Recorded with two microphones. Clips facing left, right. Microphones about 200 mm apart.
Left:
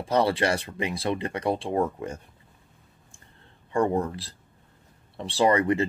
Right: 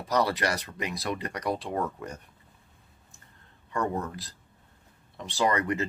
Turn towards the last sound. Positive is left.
turn(degrees=30)  # may be behind; listen again after turning